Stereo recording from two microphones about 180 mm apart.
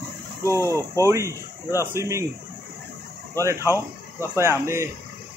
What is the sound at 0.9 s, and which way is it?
Speech, 15° right (ahead or behind).